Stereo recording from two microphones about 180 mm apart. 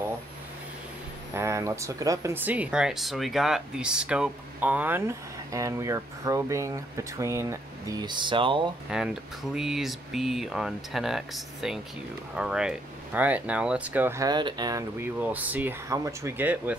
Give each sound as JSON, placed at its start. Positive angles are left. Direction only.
{"t": 1.3, "sound": "speech", "side_deg": -15}
{"t": 8.9, "sound": "speech", "side_deg": -5}